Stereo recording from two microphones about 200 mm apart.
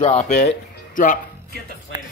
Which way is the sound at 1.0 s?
40° left (ahead or behind).